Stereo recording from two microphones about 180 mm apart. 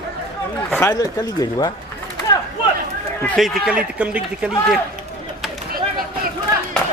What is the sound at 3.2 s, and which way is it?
A man's voice, 5° left (ahead or behind).